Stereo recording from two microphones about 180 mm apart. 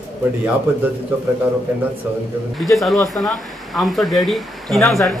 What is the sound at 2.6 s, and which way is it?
Speech, centre (ahead or behind).